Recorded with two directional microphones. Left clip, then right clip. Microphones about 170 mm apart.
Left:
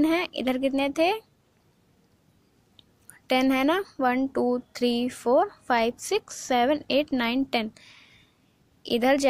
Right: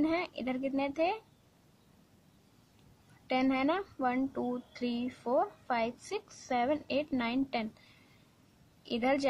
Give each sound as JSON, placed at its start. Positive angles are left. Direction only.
{"t": 0.0, "sound": "speech", "side_deg": 30}
{"t": 3.3, "sound": "speech", "side_deg": 30}
{"t": 8.8, "sound": "speech", "side_deg": 25}